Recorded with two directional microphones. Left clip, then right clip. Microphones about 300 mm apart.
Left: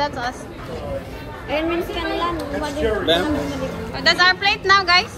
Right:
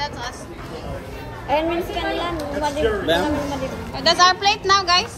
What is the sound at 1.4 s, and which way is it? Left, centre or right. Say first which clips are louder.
A woman's voice: right 1 dB; right.